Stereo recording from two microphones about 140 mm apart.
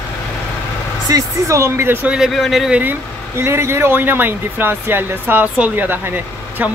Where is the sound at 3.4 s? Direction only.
20° right (ahead or behind).